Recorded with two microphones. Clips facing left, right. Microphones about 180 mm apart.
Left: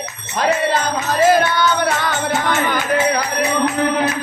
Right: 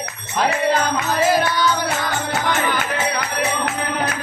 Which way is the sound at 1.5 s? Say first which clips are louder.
Left 2 dB; 60° left (ahead or behind).